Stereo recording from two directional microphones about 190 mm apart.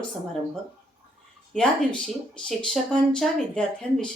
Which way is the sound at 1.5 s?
5° left (ahead or behind).